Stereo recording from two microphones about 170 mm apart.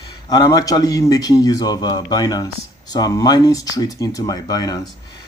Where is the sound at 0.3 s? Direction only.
20° left (ahead or behind).